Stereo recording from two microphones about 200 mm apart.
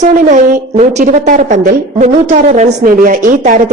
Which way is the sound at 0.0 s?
40° right (ahead or behind).